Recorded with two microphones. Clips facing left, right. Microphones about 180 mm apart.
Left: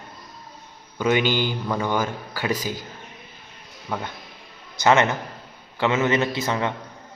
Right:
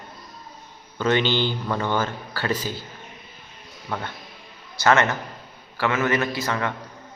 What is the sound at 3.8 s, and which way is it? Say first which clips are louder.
A man's voice: left 1 dB; 10° left (ahead or behind).